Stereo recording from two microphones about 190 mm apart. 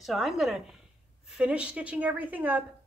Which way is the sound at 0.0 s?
Centre (ahead or behind).